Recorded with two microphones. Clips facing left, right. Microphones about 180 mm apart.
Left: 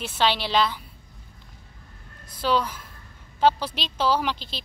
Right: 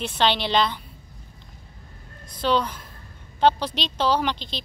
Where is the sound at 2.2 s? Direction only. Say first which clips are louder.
Right 1 dB; 5° left (ahead or behind).